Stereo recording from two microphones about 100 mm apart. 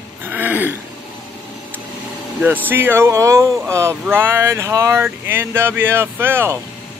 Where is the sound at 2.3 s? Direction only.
15° right (ahead or behind).